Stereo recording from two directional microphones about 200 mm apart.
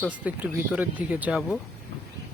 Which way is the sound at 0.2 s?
5° right (ahead or behind).